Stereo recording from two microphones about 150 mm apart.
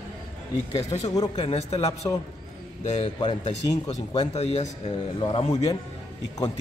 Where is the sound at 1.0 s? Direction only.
25° left (ahead or behind).